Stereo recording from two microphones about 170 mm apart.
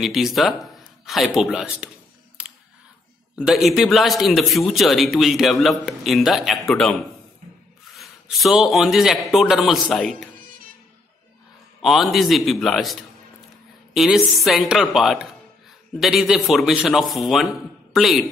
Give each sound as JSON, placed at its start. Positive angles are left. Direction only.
{"t": 0.0, "sound": "speech", "side_deg": 0}
{"t": 2.4, "sound": "camera", "side_deg": -5}
{"t": 3.3, "sound": "a man's voice", "side_deg": -5}
{"t": 11.8, "sound": "a man's voice", "side_deg": 0}